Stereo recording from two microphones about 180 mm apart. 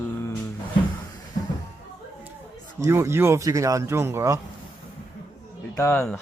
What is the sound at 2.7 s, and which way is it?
Speech, 15° right (ahead or behind).